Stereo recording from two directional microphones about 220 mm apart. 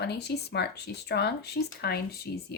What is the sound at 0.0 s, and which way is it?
Speech, 50° left (ahead or behind).